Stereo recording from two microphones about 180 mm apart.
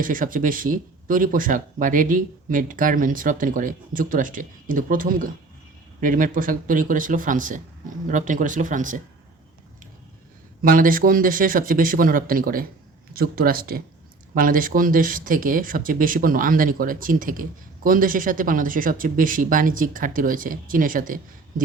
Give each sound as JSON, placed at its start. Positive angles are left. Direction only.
{"t": 0.0, "sound": "speech", "side_deg": -50}
{"t": 10.6, "sound": "speech", "side_deg": -50}